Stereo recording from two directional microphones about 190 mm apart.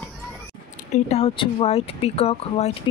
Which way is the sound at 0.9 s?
30° left (ahead or behind).